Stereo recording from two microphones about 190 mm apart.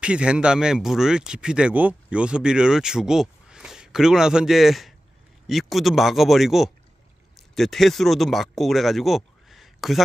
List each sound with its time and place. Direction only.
0.0 s speech: 5° right (ahead or behind)